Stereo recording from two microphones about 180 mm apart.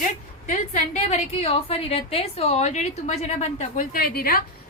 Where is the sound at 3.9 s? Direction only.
55° left (ahead or behind).